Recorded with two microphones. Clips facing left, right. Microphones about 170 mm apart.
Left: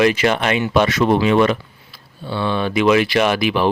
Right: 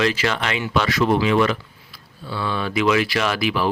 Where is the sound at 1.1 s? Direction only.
55° left (ahead or behind).